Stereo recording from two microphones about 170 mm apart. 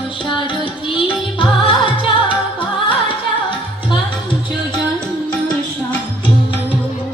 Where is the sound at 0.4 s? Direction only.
30° left (ahead or behind).